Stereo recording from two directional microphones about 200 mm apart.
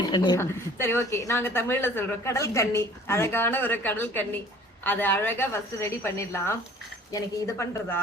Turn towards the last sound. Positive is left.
turn(degrees=15)  # may be behind; listen again after turning